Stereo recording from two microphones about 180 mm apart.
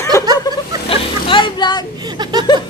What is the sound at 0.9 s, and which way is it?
Music, 25° left (ahead or behind).